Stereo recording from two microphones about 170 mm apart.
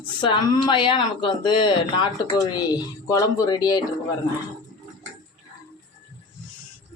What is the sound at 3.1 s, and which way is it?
Speech, 25° left (ahead or behind).